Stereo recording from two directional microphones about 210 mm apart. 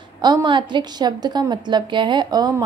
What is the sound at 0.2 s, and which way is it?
A woman's voice, 20° right (ahead or behind).